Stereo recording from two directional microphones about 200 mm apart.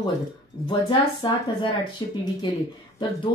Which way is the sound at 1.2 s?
25° left (ahead or behind).